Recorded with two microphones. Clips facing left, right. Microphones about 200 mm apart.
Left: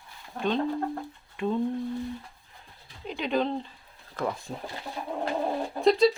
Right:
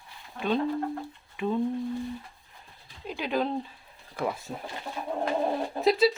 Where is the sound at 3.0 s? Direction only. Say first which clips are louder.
Left 1 dB; 5° right (ahead or behind).